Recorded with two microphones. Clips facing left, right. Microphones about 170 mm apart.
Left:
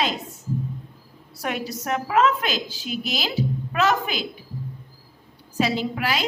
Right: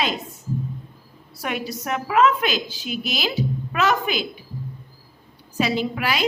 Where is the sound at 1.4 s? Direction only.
35° left (ahead or behind).